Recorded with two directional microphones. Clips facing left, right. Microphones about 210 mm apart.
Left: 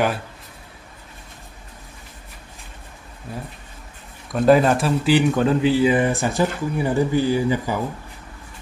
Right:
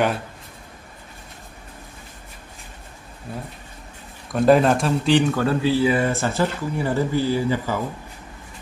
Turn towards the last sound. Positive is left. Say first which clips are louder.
# left 2 dB
turn(degrees=15)  # may be behind; listen again after turning